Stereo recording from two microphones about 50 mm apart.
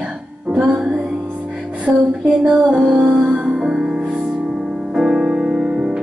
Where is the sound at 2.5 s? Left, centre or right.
Centre.